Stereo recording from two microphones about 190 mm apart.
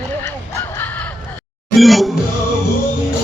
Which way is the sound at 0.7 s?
10° left (ahead or behind).